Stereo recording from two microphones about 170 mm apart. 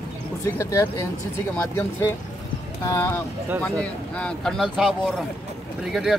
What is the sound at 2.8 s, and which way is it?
Speech, 15° left (ahead or behind).